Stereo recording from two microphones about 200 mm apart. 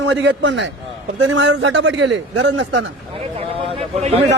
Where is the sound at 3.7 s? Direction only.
30° right (ahead or behind).